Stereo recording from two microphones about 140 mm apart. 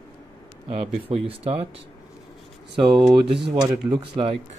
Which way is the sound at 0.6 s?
45° right (ahead or behind).